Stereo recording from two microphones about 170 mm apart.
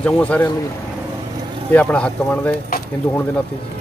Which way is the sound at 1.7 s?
10° left (ahead or behind).